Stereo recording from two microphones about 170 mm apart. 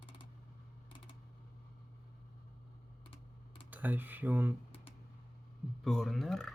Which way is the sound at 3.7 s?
10° right (ahead or behind).